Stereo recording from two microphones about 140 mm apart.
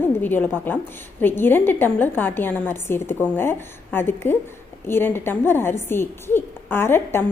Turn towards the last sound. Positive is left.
turn(degrees=15)  # may be behind; listen again after turning